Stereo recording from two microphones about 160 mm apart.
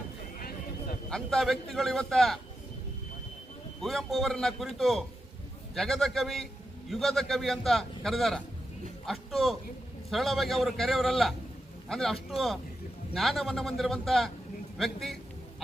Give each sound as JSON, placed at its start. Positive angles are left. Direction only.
{"t": 0.3, "sound": "a sound", "side_deg": 65}
{"t": 1.1, "sound": "a man's voice", "side_deg": 0}
{"t": 3.8, "sound": "a man's voice", "side_deg": 0}